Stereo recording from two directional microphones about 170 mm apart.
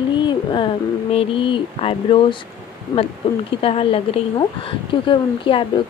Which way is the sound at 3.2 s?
30° left (ahead or behind).